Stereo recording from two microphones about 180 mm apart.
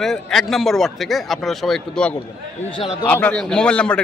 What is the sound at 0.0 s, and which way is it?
A man's voice, centre (ahead or behind).